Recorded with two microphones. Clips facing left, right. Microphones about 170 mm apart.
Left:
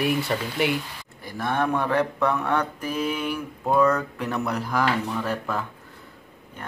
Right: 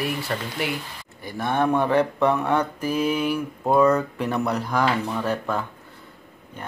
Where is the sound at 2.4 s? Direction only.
5° right (ahead or behind).